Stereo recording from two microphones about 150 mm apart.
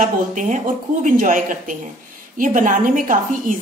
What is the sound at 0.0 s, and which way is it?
A woman's voice, 55° right (ahead or behind).